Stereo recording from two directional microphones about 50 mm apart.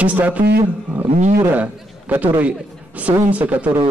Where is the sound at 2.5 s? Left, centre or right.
Right.